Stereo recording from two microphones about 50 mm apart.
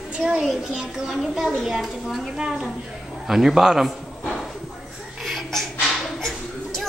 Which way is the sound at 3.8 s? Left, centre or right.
Centre.